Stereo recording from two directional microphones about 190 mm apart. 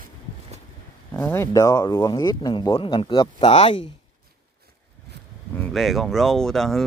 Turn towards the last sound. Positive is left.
turn(degrees=0)  # may be behind; listen again after turning